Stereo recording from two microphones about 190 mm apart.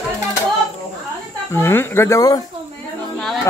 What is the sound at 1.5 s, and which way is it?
Speech, 15° left (ahead or behind).